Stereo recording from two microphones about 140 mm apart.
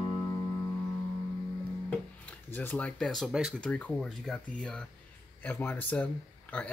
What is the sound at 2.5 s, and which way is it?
Speech, 10° left (ahead or behind).